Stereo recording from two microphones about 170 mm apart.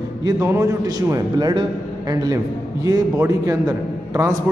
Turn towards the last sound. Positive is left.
turn(degrees=-20)  # may be behind; listen again after turning